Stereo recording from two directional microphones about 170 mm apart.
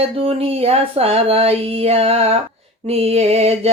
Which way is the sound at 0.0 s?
35° right (ahead or behind).